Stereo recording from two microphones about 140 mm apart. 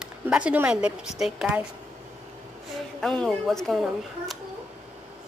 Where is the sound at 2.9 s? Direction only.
5° left (ahead or behind).